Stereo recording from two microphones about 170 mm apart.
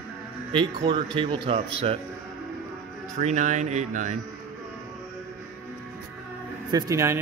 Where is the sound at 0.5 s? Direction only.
30° right (ahead or behind).